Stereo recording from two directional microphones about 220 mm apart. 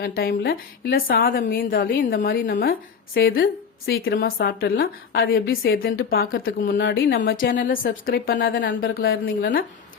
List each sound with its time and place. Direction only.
0.0 s a woman's voice: 40° left (ahead or behind)